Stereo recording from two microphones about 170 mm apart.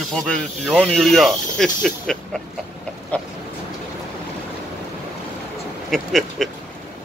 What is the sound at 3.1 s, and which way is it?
Chicken, 10° left (ahead or behind).